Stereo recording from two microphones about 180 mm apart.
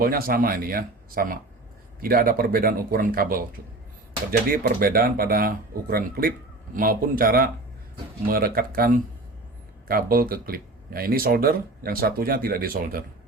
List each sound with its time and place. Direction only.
0.0 s speech: 55° right (ahead or behind)